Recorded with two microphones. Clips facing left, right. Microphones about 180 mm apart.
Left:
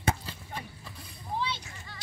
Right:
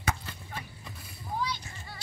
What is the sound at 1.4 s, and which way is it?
Whip, 25° left (ahead or behind).